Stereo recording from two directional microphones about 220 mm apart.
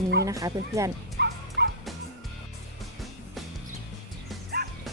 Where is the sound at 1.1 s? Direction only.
50° right (ahead or behind).